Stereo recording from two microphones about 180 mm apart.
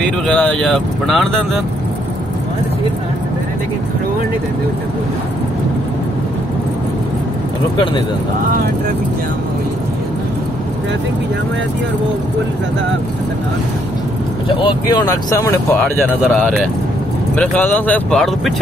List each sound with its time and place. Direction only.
0.3 s speech: 5° left (ahead or behind)
14.5 s speech: 25° left (ahead or behind)
17.4 s speech: 10° left (ahead or behind)